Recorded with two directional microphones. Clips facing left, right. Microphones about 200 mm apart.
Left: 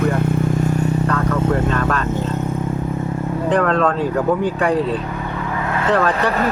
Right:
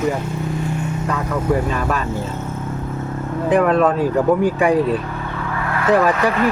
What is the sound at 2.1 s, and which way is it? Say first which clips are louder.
Speech: left 3 dB; 15° left (ahead or behind).